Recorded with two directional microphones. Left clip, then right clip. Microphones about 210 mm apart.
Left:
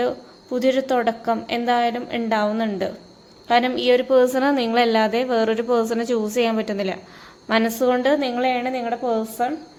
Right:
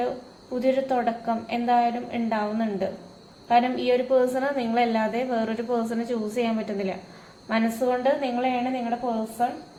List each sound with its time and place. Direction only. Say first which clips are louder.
0.6 s a woman's voice: left 4 dB; 50° left (ahead or behind)